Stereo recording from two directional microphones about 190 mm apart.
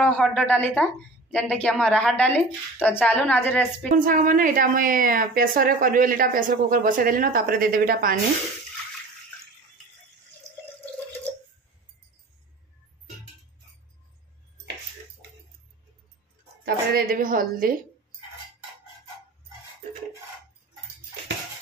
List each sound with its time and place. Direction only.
0.0 s a woman's voice: 5° left (ahead or behind)
3.9 s a woman's voice: 45° right (ahead or behind)
16.6 s a sound: 50° right (ahead or behind)